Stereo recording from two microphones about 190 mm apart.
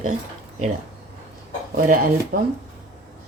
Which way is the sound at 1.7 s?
45° right (ahead or behind).